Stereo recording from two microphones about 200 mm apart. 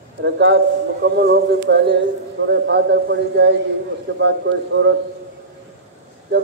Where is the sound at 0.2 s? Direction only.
60° right (ahead or behind).